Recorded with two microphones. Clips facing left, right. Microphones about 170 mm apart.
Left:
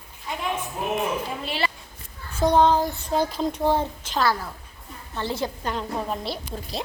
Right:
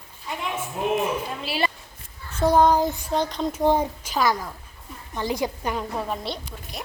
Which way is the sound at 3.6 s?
10° right (ahead or behind).